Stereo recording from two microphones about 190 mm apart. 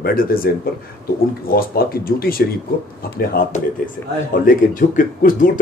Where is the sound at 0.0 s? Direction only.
50° left (ahead or behind).